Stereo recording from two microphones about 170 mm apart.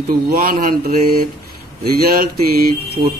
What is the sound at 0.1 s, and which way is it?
A man's voice, 60° right (ahead or behind).